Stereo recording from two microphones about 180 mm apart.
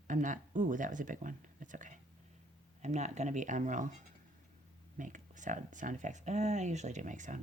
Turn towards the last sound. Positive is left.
turn(degrees=-45)  # may be behind; listen again after turning